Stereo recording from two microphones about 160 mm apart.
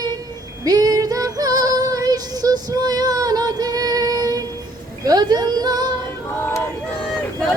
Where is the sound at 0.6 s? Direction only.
25° right (ahead or behind).